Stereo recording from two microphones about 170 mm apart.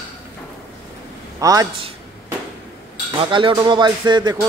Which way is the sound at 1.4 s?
20° right (ahead or behind).